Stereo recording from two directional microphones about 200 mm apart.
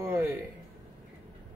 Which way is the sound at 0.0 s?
10° right (ahead or behind).